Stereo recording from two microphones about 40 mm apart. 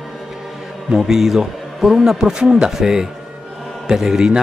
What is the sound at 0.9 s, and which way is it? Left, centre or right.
A man's voice, centre.